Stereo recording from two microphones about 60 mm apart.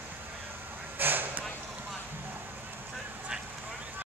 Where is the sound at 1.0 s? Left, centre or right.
Right.